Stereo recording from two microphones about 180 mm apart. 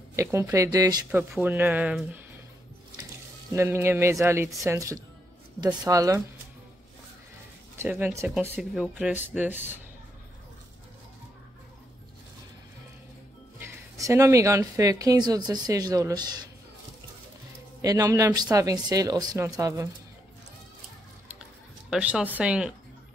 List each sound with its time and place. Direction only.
0.1 s speech: 15° right (ahead or behind)
1.1 s speech: 10° right (ahead or behind)
3.5 s speech: 15° right (ahead or behind)
7.8 s speech: 10° right (ahead or behind)
13.6 s speech: 15° right (ahead or behind)
17.8 s speech: 20° right (ahead or behind)
21.9 s speech: 5° right (ahead or behind)